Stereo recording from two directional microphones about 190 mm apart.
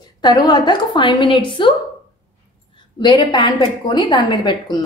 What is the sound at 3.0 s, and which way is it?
A woman's voice, 20° left (ahead or behind).